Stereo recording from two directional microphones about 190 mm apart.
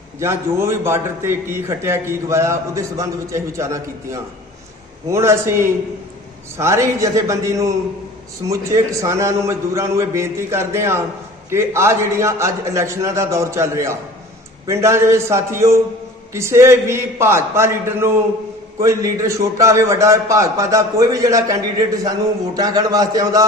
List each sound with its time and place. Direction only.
0.2 s a man's voice: 15° right (ahead or behind)